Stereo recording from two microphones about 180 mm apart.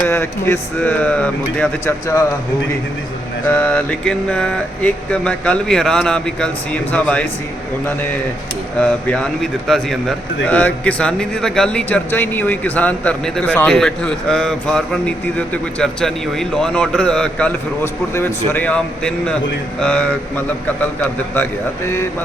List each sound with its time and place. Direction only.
0.1 s speech: 15° left (ahead or behind)
3.5 s speech: 10° left (ahead or behind)
8.8 s speech: 5° left (ahead or behind)